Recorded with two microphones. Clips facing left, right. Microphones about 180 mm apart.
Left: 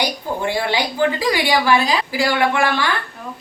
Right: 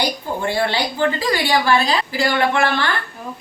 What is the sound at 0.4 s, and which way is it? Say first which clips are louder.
A woman's voice: right 1 dB; 10° left (ahead or behind).